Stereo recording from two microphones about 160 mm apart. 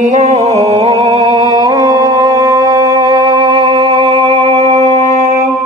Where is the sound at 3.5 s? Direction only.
40° right (ahead or behind).